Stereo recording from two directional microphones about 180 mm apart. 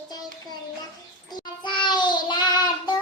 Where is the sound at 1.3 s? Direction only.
25° left (ahead or behind).